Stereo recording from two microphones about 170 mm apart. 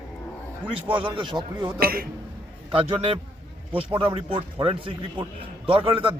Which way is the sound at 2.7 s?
35° right (ahead or behind).